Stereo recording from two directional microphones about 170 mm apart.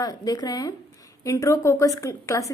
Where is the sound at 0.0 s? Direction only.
20° left (ahead or behind).